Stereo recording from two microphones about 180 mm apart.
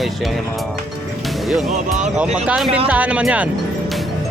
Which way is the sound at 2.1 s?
5° right (ahead or behind).